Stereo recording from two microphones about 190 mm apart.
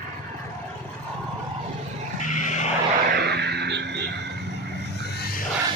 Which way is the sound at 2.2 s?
40° left (ahead or behind).